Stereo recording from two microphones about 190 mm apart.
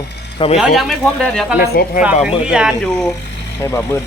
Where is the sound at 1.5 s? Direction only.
50° left (ahead or behind).